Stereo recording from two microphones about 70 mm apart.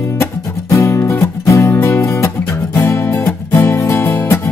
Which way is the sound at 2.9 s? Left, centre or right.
Left.